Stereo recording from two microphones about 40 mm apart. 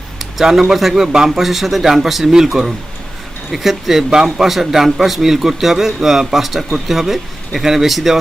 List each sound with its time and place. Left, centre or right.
0.2 s a man's voice: centre